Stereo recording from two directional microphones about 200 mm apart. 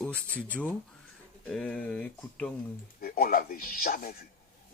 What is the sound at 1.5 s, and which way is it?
Speech, 5° left (ahead or behind).